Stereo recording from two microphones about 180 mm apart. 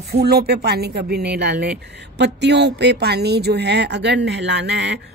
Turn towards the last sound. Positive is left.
turn(degrees=-70)  # may be behind; listen again after turning